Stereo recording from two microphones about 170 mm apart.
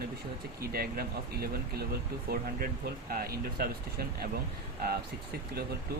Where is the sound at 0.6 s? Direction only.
60° right (ahead or behind).